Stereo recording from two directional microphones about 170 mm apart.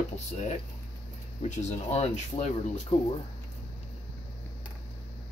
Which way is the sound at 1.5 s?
40° left (ahead or behind).